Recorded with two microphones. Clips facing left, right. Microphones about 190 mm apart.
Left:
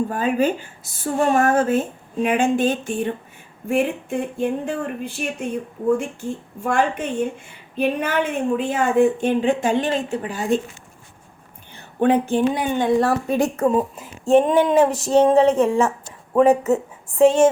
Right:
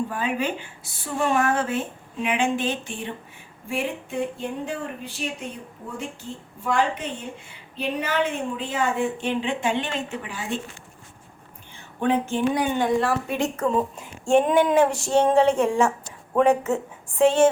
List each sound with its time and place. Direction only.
0.1 s a woman's voice: 45° left (ahead or behind)
6.6 s a woman's voice: 50° left (ahead or behind)
11.9 s a woman's voice: 35° left (ahead or behind)
12.5 s speech: 25° left (ahead or behind)
13.0 s a woman's voice: 40° left (ahead or behind)
13.7 s a woman's voice: 10° left (ahead or behind)
14.3 s a sound: centre (ahead or behind)
16.3 s a woman's voice: 5° left (ahead or behind)